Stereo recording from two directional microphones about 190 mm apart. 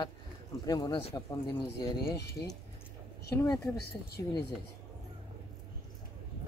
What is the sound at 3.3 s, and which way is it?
Speech, 15° left (ahead or behind).